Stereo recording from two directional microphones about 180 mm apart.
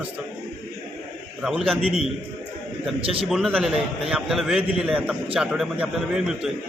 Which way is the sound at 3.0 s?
30° right (ahead or behind).